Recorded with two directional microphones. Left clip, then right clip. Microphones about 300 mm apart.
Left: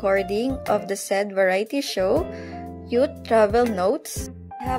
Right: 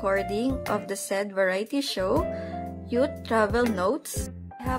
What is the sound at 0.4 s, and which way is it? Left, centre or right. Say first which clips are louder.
Music: left 5 dB; centre.